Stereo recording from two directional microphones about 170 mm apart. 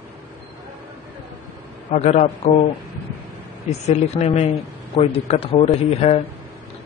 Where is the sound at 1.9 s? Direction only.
45° left (ahead or behind).